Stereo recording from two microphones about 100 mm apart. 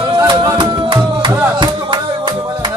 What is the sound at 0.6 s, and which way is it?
Music, 50° right (ahead or behind).